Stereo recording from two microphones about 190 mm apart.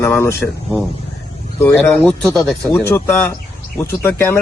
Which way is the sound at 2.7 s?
10° left (ahead or behind).